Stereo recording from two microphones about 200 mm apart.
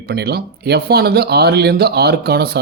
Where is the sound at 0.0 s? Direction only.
55° right (ahead or behind).